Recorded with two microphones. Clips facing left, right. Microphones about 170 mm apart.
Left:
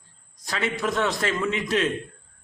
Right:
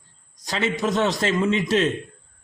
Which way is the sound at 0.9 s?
25° right (ahead or behind).